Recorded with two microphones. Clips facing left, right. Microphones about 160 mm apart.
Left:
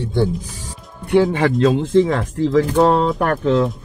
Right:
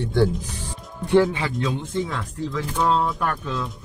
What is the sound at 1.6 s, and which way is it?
Speech, 90° left.